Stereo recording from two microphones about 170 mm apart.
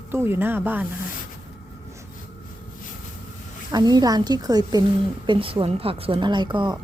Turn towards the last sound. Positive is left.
turn(degrees=-25)  # may be behind; listen again after turning